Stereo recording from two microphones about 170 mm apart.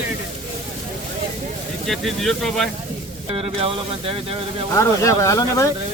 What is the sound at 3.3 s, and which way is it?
Speech, 35° right (ahead or behind).